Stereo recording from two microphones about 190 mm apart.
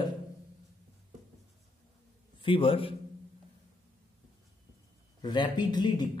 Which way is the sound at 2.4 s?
30° left (ahead or behind).